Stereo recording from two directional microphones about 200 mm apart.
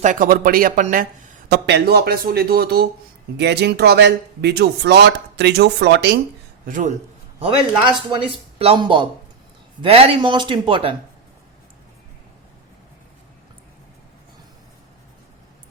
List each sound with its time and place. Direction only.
0.0 s speech: 40° right (ahead or behind)
1.5 s speech: 55° right (ahead or behind)
6.7 s speech: 40° right (ahead or behind)
8.1 s a man's voice: 25° right (ahead or behind)